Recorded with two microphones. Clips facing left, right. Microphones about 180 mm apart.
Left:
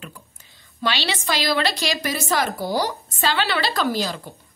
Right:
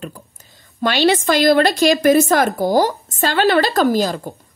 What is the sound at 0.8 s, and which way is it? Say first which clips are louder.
A woman's voice: right 10 dB; 50° right (ahead or behind).